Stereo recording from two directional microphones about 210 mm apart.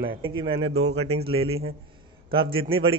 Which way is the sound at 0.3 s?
25° right (ahead or behind).